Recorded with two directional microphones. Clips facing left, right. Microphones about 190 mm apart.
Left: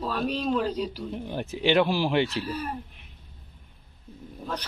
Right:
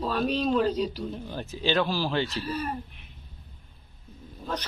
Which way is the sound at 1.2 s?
20° left (ahead or behind).